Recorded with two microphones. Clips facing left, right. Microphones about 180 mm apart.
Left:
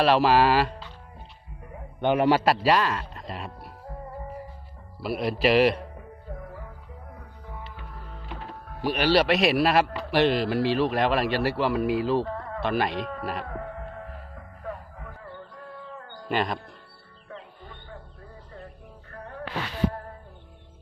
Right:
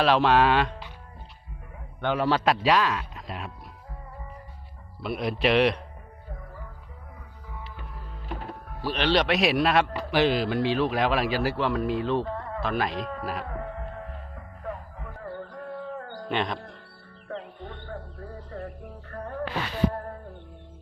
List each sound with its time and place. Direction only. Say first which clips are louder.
0.0 s a man's voice: left 1 dB; centre (ahead or behind)
2.0 s a man's voice: left 4 dB; 15° left (ahead or behind); by 3.5 s centre (ahead or behind)
4.9 s a man's voice: left 2 dB; 5° left (ahead or behind)
8.8 s a man's voice: left 2 dB; 10° left (ahead or behind)
14.3 s music: right 1 dB; centre (ahead or behind)
15.2 s a sound: right 9 dB; 45° right (ahead or behind)
16.3 s a man's voice: left 2 dB; 5° left (ahead or behind)
17.6 s a sound: right 6 dB; 65° right (ahead or behind)
19.1 s music: right 3 dB; 45° right (ahead or behind)